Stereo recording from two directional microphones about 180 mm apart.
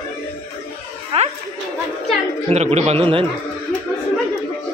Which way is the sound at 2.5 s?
35° right (ahead or behind).